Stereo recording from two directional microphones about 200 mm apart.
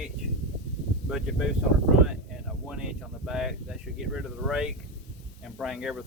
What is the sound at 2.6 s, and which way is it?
Speech, 5° right (ahead or behind).